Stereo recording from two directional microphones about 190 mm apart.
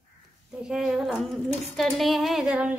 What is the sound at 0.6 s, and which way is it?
A woman's voice, centre (ahead or behind).